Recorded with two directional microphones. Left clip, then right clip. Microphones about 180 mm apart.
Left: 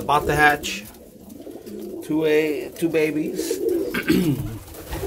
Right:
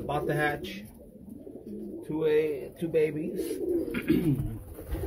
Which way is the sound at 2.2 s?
15° left (ahead or behind).